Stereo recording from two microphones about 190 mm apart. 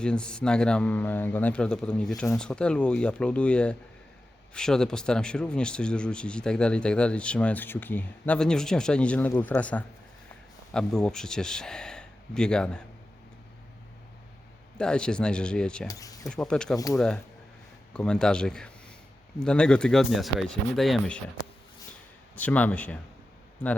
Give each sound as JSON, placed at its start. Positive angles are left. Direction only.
{"t": 0.0, "sound": "speech", "side_deg": 5}
{"t": 14.8, "sound": "speech", "side_deg": 5}
{"t": 15.9, "sound": "speech", "side_deg": 20}
{"t": 16.2, "sound": "speech", "side_deg": 5}
{"t": 16.7, "sound": "speech", "side_deg": 15}
{"t": 17.9, "sound": "speech", "side_deg": 5}
{"t": 22.4, "sound": "speech", "side_deg": 10}